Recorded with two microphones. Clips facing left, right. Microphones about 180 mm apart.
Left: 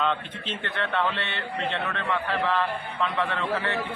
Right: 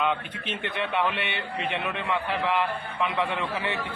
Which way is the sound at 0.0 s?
10° right (ahead or behind).